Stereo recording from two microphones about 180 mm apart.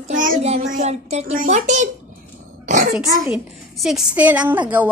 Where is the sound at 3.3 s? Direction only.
Centre (ahead or behind).